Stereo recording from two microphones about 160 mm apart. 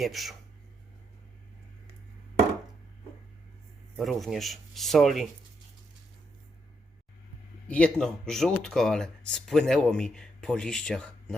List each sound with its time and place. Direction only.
0.0 s speech: centre (ahead or behind)
3.9 s speech: centre (ahead or behind)
7.7 s speech: 5° left (ahead or behind)